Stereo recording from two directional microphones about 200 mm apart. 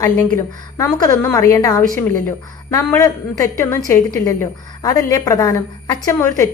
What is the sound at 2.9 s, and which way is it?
A woman's voice, 15° left (ahead or behind).